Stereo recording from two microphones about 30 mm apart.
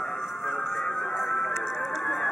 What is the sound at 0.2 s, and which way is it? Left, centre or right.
Music, centre.